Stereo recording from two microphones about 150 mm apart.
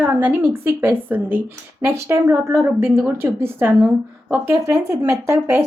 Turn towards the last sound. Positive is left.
turn(degrees=-15)  # may be behind; listen again after turning